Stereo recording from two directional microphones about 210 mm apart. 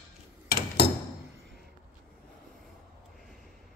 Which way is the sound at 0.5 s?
50° left (ahead or behind).